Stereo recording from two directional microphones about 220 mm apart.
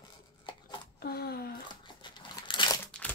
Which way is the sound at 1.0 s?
45° left (ahead or behind).